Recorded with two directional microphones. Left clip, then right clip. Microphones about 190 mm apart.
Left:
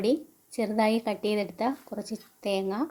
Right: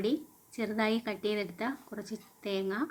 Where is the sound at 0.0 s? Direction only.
20° left (ahead or behind).